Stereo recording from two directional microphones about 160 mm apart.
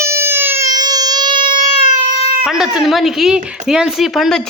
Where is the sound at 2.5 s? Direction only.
5° right (ahead or behind).